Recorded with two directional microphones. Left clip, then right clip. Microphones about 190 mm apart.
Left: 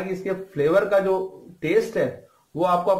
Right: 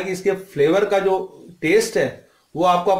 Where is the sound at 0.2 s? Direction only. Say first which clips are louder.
Right 6 dB; 30° right (ahead or behind).